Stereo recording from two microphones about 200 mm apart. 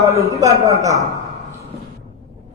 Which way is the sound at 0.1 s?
15° right (ahead or behind).